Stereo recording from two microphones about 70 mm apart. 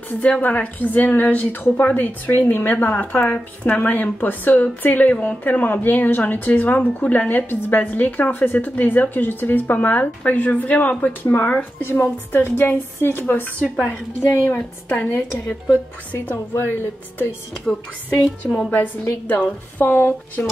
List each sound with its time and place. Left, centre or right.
0.2 s a woman's voice: left
14.2 s speech: left
15.1 s a woman's voice: left
16.5 s speech: left
19.2 s a woman's voice: left